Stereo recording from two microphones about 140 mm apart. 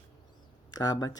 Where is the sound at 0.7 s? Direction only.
30° left (ahead or behind).